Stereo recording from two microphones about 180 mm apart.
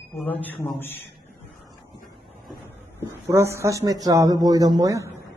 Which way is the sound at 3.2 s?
15° right (ahead or behind).